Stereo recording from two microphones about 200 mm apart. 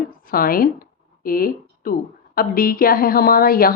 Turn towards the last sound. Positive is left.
turn(degrees=45)  # may be behind; listen again after turning